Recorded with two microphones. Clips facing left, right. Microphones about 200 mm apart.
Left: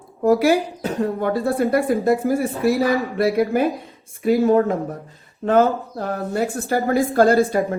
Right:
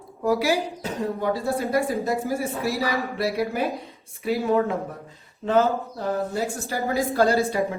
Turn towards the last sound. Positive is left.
turn(degrees=50)  # may be behind; listen again after turning